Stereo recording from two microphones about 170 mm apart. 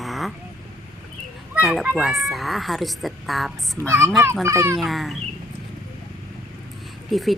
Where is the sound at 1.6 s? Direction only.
Centre (ahead or behind).